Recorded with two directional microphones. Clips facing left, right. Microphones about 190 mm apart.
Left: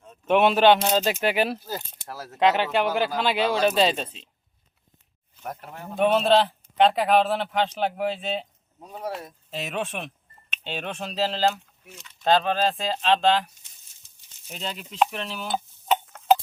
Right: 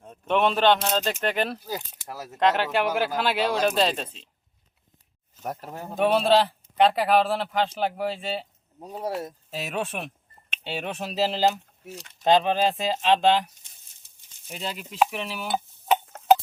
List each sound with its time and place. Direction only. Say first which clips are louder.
0.3 s speech: left 3 dB; 5° left (ahead or behind)
2.0 s speech: even; 15° right (ahead or behind)
2.3 s speech: left 1 dB; centre (ahead or behind)
5.4 s speech: right 3 dB; 35° right (ahead or behind)
6.0 s speech: left 1 dB; 5° right (ahead or behind)
8.8 s speech: right 2 dB; 35° right (ahead or behind)
9.5 s speech: left 2 dB; 5° right (ahead or behind)
14.4 s stir: right 1 dB; 5° right (ahead or behind)